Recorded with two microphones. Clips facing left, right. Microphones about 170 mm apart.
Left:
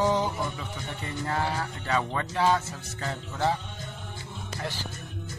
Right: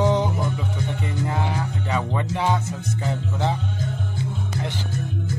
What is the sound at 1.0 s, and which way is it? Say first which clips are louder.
Music: right 1 dB; 15° right (ahead or behind).